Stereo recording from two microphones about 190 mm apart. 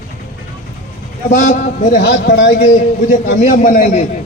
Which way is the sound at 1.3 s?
45° left (ahead or behind).